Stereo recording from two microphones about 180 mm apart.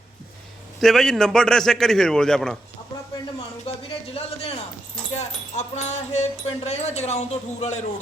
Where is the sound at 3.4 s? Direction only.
35° left (ahead or behind).